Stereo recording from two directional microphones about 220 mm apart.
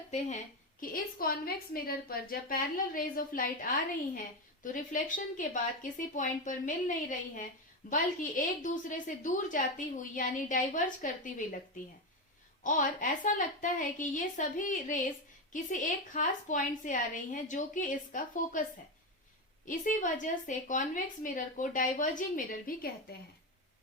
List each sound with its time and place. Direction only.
0.1 s a woman's voice: 30° left (ahead or behind)
12.6 s a woman's voice: 35° left (ahead or behind)
19.6 s a woman's voice: 35° left (ahead or behind)